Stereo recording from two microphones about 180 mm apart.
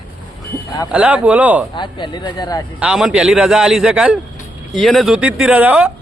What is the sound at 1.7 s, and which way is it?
Speech, 25° left (ahead or behind).